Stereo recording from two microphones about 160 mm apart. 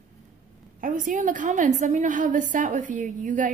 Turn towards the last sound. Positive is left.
turn(degrees=-50)  # may be behind; listen again after turning